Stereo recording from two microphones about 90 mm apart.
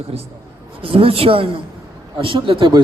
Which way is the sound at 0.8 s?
90° right.